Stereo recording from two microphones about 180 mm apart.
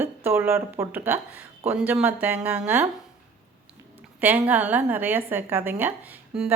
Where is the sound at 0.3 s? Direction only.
15° right (ahead or behind).